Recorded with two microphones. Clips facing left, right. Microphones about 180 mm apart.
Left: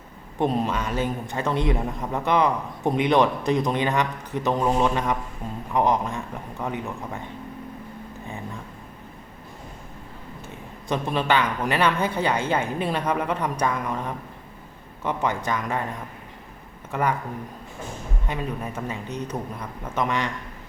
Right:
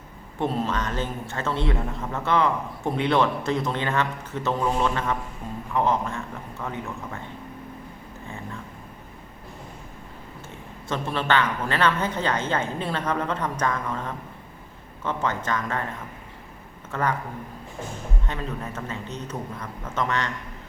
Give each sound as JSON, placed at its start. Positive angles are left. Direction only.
{"t": 0.3, "sound": "a man's voice", "side_deg": 15}
{"t": 10.8, "sound": "a man's voice", "side_deg": 15}
{"t": 16.9, "sound": "a man's voice", "side_deg": 10}
{"t": 18.3, "sound": "a man's voice", "side_deg": 15}